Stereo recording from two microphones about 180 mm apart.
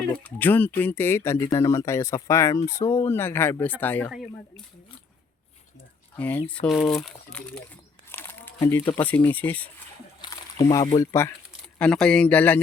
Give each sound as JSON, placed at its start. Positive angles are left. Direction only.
{"t": 0.2, "sound": "speech", "side_deg": 10}
{"t": 6.1, "sound": "speech", "side_deg": 10}
{"t": 8.1, "sound": "crumpling", "side_deg": 10}
{"t": 8.5, "sound": "speech", "side_deg": 15}
{"t": 10.2, "sound": "speech", "side_deg": 20}
{"t": 11.8, "sound": "speech", "side_deg": 5}